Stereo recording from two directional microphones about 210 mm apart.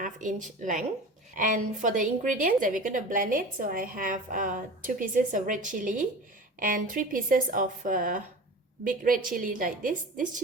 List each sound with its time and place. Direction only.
0.0 s a woman's voice: 40° right (ahead or behind)